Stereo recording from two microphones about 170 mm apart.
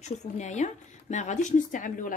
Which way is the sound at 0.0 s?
45° left (ahead or behind).